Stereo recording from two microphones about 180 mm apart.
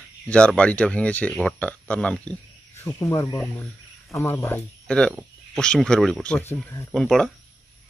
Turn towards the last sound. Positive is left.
turn(degrees=0)  # may be behind; listen again after turning